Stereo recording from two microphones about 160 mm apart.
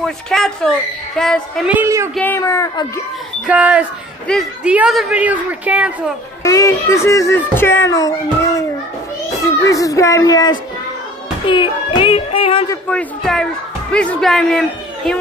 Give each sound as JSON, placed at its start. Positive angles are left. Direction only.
{"t": 0.0, "sound": "a woman's voice", "side_deg": 0}
{"t": 1.7, "sound": "a woman's voice", "side_deg": -15}
{"t": 2.1, "sound": "speech", "side_deg": 15}
{"t": 3.4, "sound": "a woman's voice", "side_deg": -10}
{"t": 6.4, "sound": "speech", "side_deg": 20}
{"t": 9.4, "sound": "speech", "side_deg": 20}
{"t": 11.4, "sound": "a sound", "side_deg": 30}
{"t": 12.8, "sound": "a woman's voice", "side_deg": 5}